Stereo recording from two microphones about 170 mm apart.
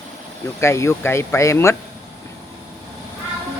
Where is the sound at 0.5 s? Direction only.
15° left (ahead or behind).